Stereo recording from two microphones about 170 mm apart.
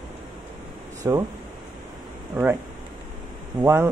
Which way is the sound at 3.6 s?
15° right (ahead or behind).